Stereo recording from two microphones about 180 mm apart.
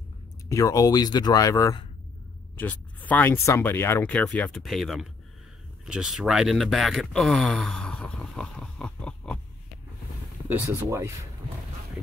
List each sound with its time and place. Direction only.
0.5 s speech: 20° left (ahead or behind); by 5.1 s centre (ahead or behind)
5.9 s a sound: 5° right (ahead or behind)
10.5 s speech: 15° right (ahead or behind)